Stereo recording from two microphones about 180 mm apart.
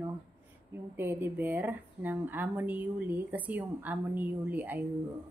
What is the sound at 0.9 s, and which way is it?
Speech, 10° right (ahead or behind).